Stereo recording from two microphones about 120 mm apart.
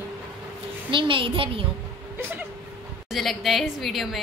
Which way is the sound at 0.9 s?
45° right (ahead or behind).